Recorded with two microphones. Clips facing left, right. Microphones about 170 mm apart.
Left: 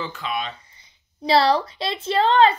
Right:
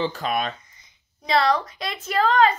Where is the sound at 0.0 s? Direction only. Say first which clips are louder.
Right 4 dB; 40° right (ahead or behind).